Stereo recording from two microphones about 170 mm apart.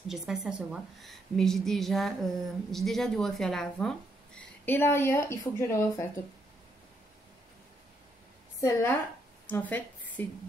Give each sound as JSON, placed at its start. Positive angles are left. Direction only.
{"t": 0.1, "sound": "a woman's voice", "side_deg": -5}
{"t": 8.5, "sound": "a woman's voice", "side_deg": 20}